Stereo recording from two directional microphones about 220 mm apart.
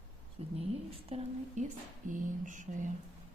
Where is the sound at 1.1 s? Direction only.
30° right (ahead or behind).